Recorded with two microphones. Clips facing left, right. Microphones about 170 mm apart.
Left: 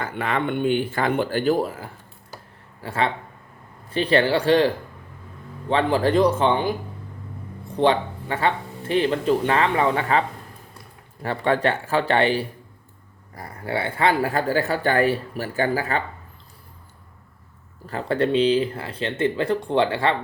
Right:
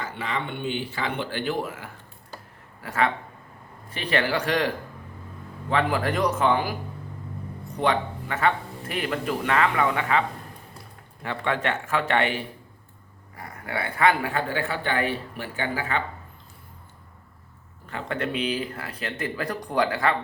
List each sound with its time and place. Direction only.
0.0 s speech: 55° left (ahead or behind); by 6.7 s 25° left (ahead or behind)
7.8 s a man's voice: 30° left (ahead or behind)
17.8 s speech: 35° left (ahead or behind)